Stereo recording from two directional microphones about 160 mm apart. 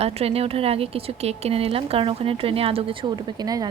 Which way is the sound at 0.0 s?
40° right (ahead or behind).